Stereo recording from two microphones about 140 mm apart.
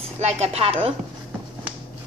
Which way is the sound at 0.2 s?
50° right (ahead or behind).